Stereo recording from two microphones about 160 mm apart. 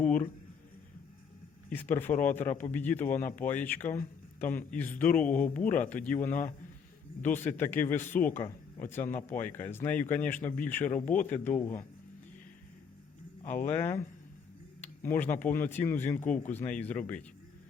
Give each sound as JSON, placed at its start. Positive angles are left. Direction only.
{"t": 1.7, "sound": "speech", "side_deg": 15}
{"t": 7.4, "sound": "speech", "side_deg": 10}
{"t": 9.0, "sound": "speech", "side_deg": 50}
{"t": 9.5, "sound": "speech", "side_deg": 15}
{"t": 13.4, "sound": "speech", "side_deg": 55}
{"t": 13.7, "sound": "speech", "side_deg": 15}